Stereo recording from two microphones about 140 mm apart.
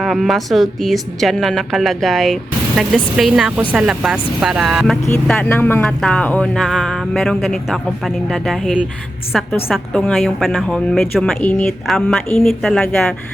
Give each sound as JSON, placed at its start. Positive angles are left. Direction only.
{"t": 0.0, "sound": "a woman's voice", "side_deg": 0}
{"t": 5.3, "sound": "a woman's voice", "side_deg": 10}